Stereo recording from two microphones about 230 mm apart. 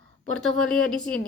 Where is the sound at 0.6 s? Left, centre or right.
Centre.